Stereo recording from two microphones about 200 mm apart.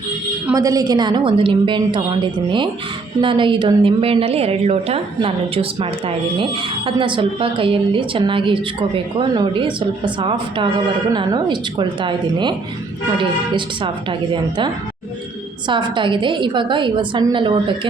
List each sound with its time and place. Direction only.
0.5 s a woman's voice: 15° right (ahead or behind)
3.2 s a woman's voice: 25° right (ahead or behind)
6.8 s a woman's voice: 25° right (ahead or behind)
15.6 s a woman's voice: 25° right (ahead or behind)